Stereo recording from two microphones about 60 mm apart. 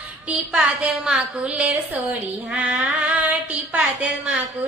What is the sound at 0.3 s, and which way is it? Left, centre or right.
A woman's voice, centre.